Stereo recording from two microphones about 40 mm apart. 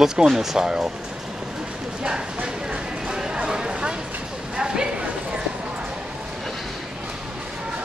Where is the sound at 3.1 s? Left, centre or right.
Centre.